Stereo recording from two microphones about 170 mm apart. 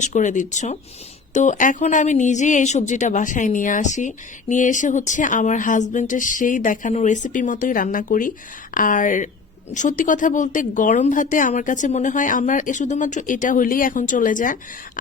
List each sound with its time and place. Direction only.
0.0 s speech: 45° left (ahead or behind)